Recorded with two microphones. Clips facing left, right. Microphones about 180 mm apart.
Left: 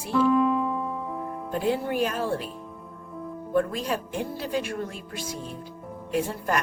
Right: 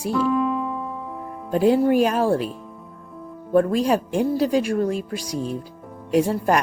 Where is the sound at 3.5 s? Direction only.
40° right (ahead or behind).